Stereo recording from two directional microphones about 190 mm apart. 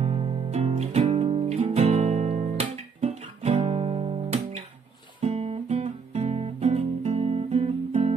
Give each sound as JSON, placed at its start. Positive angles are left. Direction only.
{"t": 0.0, "sound": "music", "side_deg": -35}
{"t": 5.2, "sound": "guitar", "side_deg": -30}